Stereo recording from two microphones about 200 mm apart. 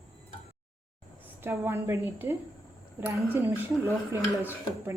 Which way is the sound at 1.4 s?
10° right (ahead or behind).